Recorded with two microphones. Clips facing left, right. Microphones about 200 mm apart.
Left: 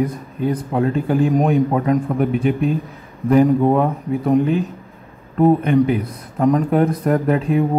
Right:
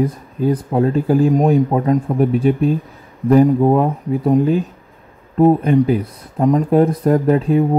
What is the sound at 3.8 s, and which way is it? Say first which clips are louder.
Speech: right 2 dB; 35° right (ahead or behind).